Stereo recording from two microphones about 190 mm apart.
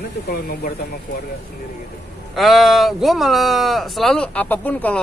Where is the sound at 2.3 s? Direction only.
Centre (ahead or behind).